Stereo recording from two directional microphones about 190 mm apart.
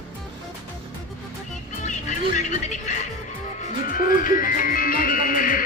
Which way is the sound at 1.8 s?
40° left (ahead or behind).